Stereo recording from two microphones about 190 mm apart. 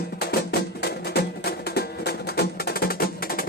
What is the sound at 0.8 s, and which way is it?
Music, 55° left (ahead or behind).